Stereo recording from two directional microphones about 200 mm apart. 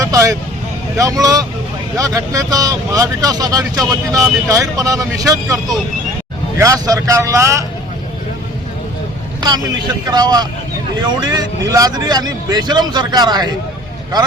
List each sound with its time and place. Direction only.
0.0 s vehicle: 15° right (ahead or behind)
0.9 s speech: 15° right (ahead or behind)
6.6 s speech: 15° right (ahead or behind)
10.1 s speech: 20° right (ahead or behind)